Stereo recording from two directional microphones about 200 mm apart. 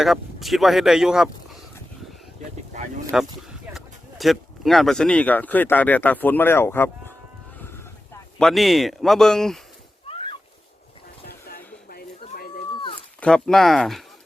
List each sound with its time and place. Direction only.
0.0 s speech: centre (ahead or behind)
3.1 s speech: centre (ahead or behind)
8.4 s speech: centre (ahead or behind)
10.1 s a sound: 25° left (ahead or behind)
11.3 s a sound: 50° left (ahead or behind)
12.7 s cat: 25° left (ahead or behind)
13.1 s speech: 5° left (ahead or behind)